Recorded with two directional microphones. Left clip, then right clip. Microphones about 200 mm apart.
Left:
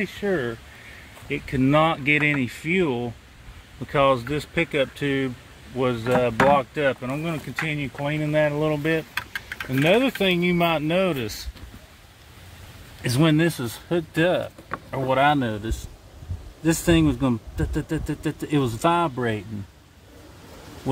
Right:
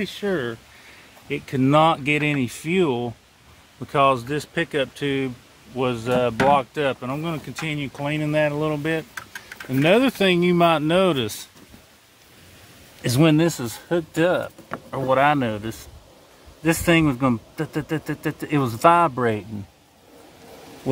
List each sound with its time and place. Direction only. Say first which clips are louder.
0.0 s speech: even; 15° right (ahead or behind)
9.7 s speech: right 2 dB; 20° right (ahead or behind)
13.0 s speech: right 2 dB; 15° right (ahead or behind)